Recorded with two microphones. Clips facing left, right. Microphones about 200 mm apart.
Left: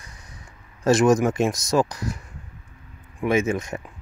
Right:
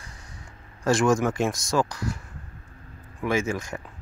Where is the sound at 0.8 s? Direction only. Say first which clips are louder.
Left 4 dB; 20° left (ahead or behind).